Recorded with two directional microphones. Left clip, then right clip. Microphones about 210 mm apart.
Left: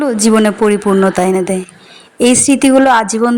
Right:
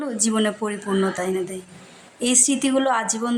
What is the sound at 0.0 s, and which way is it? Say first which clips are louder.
A woman's voice: left 12 dB; 30° left (ahead or behind).